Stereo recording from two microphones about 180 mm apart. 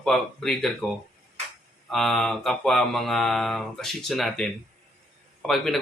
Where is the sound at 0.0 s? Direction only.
Centre (ahead or behind).